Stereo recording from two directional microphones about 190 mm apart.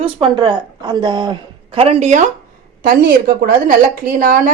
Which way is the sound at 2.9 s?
50° right (ahead or behind).